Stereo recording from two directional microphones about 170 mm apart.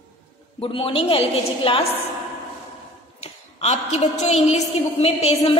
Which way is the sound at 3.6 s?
40° left (ahead or behind).